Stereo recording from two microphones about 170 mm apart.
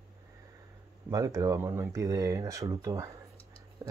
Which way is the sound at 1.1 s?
20° right (ahead or behind).